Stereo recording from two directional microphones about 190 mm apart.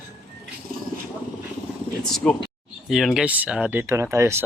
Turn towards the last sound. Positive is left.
turn(degrees=-15)  # may be behind; listen again after turning